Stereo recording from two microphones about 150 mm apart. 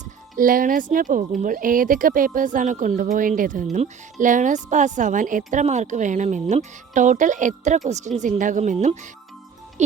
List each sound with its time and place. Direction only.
0.0 s speech: 65° right (ahead or behind)